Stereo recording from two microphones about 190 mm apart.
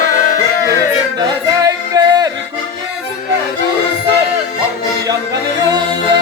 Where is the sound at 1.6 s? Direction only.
20° right (ahead or behind).